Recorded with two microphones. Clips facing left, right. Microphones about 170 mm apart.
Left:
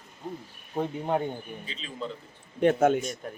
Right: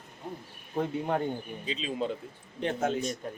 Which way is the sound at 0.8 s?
20° left (ahead or behind).